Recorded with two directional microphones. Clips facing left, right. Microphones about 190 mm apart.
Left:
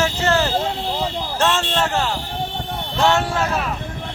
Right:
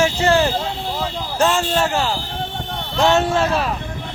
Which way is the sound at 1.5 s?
10° right (ahead or behind).